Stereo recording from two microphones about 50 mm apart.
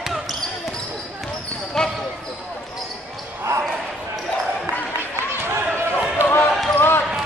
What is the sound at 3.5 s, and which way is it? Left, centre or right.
Basketball bounce, right.